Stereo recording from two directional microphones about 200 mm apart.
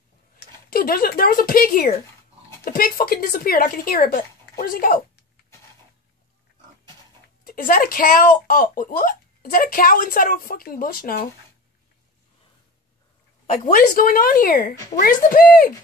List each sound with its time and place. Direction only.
0.7 s a woman's voice: 45° left (ahead or behind)
7.4 s a woman's voice: 45° left (ahead or behind)
13.5 s a woman's voice: 45° left (ahead or behind)